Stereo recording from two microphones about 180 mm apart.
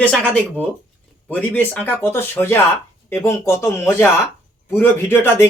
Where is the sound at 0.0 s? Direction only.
5° left (ahead or behind).